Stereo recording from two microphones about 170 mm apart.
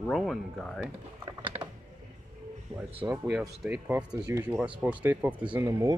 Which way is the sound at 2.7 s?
30° right (ahead or behind).